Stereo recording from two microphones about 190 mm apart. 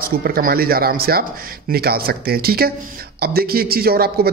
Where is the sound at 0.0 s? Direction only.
50° right (ahead or behind).